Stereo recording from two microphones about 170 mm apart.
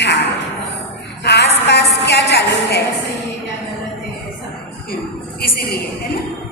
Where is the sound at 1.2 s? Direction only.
75° left (ahead or behind).